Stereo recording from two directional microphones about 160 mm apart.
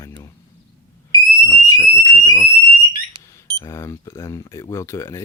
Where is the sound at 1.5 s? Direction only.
20° left (ahead or behind).